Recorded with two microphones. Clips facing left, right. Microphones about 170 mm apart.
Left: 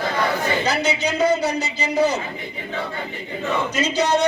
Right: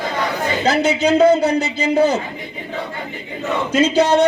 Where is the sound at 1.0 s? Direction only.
55° right (ahead or behind).